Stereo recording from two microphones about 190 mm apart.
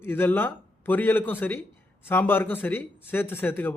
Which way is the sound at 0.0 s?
10° left (ahead or behind).